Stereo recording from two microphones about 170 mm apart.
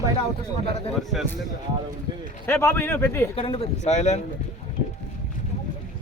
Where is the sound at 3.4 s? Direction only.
35° left (ahead or behind).